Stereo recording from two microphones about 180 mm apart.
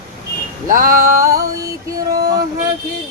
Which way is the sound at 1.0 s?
20° right (ahead or behind).